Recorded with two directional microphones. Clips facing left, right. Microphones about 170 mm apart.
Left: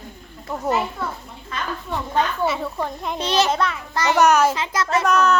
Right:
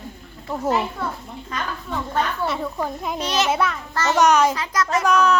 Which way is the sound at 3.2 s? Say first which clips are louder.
Left 3 dB; 30° left (ahead or behind).